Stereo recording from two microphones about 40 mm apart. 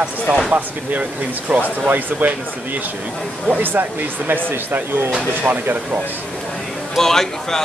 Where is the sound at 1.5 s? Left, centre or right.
Right.